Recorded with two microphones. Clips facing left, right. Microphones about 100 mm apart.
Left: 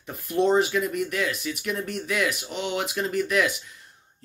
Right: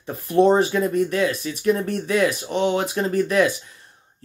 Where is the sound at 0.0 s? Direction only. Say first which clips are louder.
Right 6 dB; 40° right (ahead or behind).